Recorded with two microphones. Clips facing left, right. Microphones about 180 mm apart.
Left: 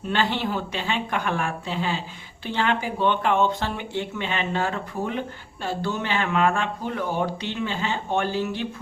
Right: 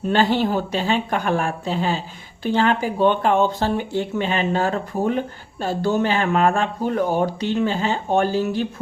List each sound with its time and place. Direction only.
0.1 s speech: 40° right (ahead or behind)